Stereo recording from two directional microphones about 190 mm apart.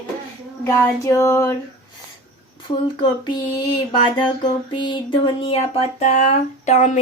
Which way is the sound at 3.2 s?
25° left (ahead or behind).